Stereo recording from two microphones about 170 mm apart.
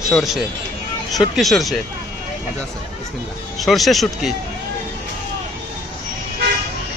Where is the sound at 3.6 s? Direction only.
Centre (ahead or behind).